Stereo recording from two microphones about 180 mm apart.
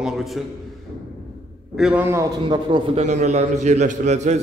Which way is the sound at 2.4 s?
25° right (ahead or behind).